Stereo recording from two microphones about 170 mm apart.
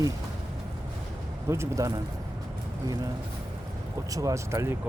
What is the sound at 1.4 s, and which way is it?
Speech, 15° right (ahead or behind).